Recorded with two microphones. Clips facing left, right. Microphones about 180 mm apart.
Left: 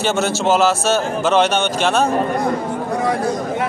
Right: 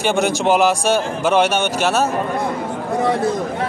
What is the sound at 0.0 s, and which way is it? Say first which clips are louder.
A man's voice: right 1 dB; 15° right (ahead or behind).